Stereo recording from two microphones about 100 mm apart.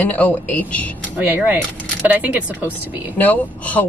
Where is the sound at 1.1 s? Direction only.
20° right (ahead or behind).